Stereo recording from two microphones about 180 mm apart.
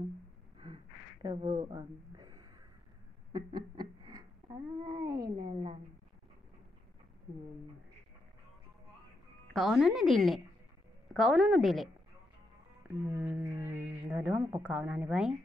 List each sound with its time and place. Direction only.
1.2 s speech: 25° right (ahead or behind)
3.3 s a sound: 20° right (ahead or behind)
5.3 s a woman's voice: 25° right (ahead or behind)
9.5 s speech: centre (ahead or behind)
13.1 s a woman's voice: 10° right (ahead or behind)